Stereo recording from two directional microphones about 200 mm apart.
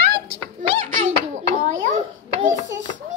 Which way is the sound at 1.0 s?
35° right (ahead or behind).